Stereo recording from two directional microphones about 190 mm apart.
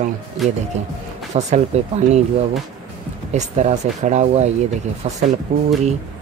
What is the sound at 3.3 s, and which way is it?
Speech, 35° right (ahead or behind).